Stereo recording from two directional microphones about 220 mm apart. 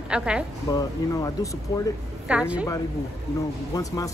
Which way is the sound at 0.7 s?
15° left (ahead or behind).